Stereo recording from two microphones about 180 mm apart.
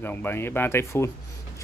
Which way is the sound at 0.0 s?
10° left (ahead or behind).